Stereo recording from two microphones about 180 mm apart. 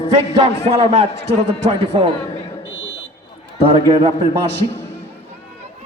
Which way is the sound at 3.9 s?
25° right (ahead or behind).